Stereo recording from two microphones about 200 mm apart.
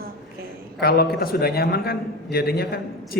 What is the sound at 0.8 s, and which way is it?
A man's voice, 50° left (ahead or behind).